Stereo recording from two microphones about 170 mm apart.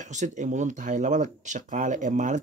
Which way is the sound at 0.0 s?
45° right (ahead or behind).